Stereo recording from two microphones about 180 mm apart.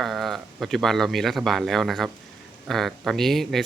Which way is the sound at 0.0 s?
Centre (ahead or behind).